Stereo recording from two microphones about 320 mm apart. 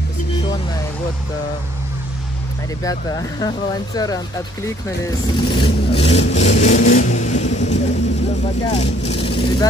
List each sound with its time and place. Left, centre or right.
2.8 s speech: centre
6.6 s vehicle: left
8.6 s speech: centre